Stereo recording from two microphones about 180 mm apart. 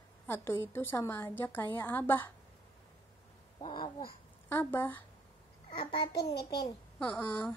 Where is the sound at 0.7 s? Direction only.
15° left (ahead or behind).